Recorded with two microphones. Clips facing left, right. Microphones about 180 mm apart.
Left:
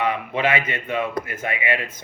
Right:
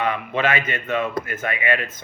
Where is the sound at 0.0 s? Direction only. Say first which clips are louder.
Even; 25° left (ahead or behind).